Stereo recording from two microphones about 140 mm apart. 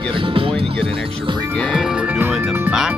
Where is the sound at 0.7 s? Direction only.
5° left (ahead or behind).